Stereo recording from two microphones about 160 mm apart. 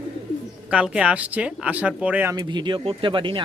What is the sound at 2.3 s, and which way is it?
Speech, 25° right (ahead or behind).